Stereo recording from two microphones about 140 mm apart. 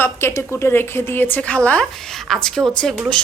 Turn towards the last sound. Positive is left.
turn(degrees=5)  # may be behind; listen again after turning